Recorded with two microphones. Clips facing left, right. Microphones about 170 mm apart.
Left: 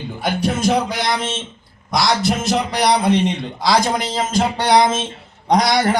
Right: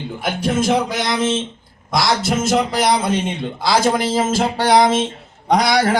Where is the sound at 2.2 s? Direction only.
20° right (ahead or behind).